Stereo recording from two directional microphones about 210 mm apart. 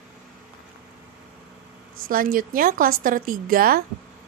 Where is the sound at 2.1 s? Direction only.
40° right (ahead or behind).